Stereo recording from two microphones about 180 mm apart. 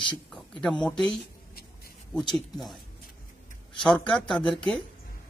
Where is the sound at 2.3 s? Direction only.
Centre (ahead or behind).